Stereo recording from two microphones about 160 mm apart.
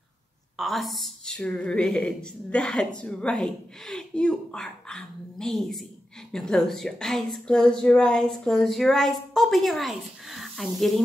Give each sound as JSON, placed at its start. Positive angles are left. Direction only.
{"t": 0.6, "sound": "a woman's voice", "side_deg": 0}